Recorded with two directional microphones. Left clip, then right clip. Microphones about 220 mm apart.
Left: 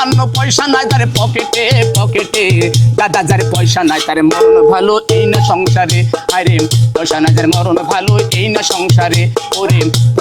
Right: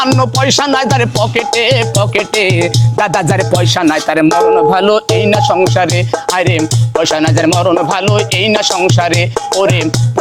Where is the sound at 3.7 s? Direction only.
70° right (ahead or behind).